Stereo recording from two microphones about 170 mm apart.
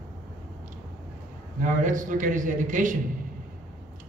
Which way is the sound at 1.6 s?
50° right (ahead or behind).